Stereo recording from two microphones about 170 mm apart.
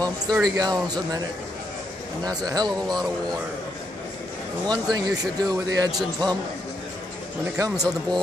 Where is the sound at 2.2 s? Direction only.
25° right (ahead or behind).